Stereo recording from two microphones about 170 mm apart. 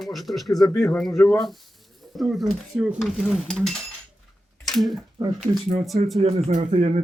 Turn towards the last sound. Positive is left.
turn(degrees=-40)  # may be behind; listen again after turning